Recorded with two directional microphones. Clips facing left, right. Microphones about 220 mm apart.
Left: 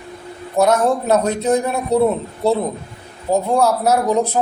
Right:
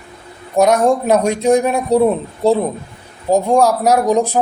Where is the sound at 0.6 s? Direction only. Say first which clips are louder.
Right 3 dB; 15° right (ahead or behind).